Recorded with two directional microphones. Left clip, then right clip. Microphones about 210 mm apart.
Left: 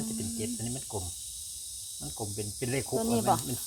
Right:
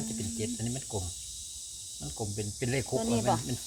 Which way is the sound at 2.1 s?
Centre (ahead or behind).